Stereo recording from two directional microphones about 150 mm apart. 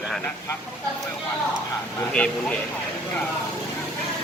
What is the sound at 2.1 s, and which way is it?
Speech, 5° left (ahead or behind).